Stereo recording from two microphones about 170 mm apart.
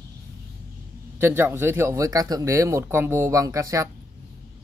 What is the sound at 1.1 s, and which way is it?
Speech, 15° right (ahead or behind).